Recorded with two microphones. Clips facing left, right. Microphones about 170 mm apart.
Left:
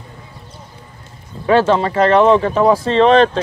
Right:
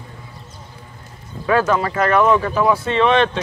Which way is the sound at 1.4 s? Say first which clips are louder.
Left 4 dB; 30° left (ahead or behind).